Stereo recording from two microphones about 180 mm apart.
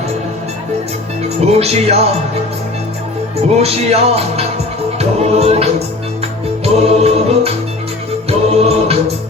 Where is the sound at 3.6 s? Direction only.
35° right (ahead or behind).